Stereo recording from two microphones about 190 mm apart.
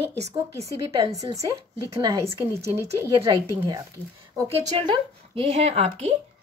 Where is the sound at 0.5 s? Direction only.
15° right (ahead or behind).